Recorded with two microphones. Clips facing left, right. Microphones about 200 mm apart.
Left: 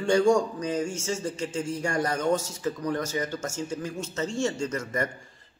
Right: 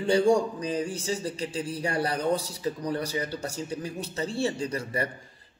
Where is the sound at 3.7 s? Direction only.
15° right (ahead or behind).